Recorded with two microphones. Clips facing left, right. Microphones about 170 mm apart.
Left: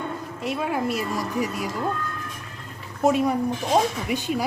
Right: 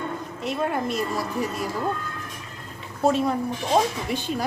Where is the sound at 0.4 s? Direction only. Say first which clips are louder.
Even; 5° left (ahead or behind).